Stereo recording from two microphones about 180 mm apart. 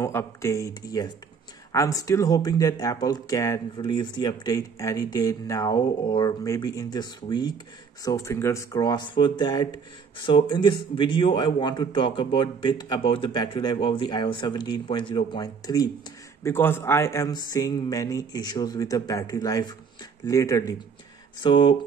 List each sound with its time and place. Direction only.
0.0 s a man's voice: 15° left (ahead or behind)